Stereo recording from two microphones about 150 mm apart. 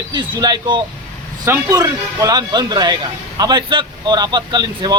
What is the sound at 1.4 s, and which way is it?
A man's voice, 20° right (ahead or behind).